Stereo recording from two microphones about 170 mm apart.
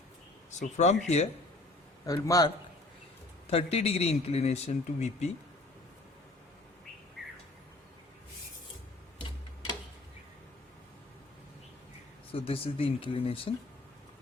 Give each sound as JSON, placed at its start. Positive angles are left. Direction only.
{"t": 0.6, "sound": "speech", "side_deg": 40}
{"t": 2.0, "sound": "a man's voice", "side_deg": 20}
{"t": 3.4, "sound": "speech", "side_deg": 35}
{"t": 12.3, "sound": "speech", "side_deg": 35}